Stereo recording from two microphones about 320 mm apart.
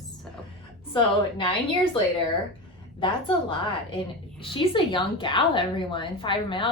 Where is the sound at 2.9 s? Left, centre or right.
Centre.